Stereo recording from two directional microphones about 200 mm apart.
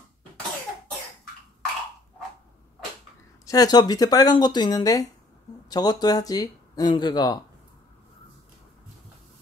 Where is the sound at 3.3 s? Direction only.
15° left (ahead or behind).